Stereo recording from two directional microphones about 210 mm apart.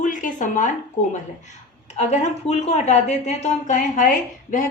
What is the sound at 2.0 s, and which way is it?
A woman's voice, 35° left (ahead or behind).